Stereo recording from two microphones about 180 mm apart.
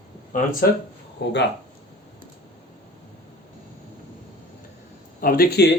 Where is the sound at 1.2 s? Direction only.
75° left (ahead or behind).